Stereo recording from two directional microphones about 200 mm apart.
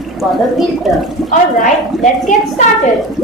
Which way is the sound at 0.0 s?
Centre (ahead or behind).